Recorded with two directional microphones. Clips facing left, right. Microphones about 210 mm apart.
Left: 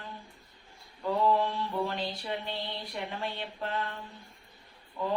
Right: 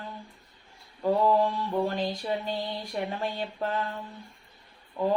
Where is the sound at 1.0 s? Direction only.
45° right (ahead or behind).